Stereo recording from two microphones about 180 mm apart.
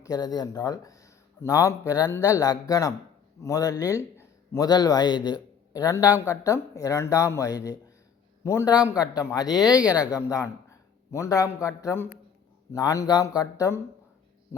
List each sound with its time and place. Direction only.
0.0 s a man's voice: 20° left (ahead or behind)